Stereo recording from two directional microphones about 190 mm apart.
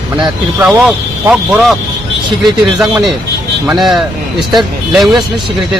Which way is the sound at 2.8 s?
Centre (ahead or behind).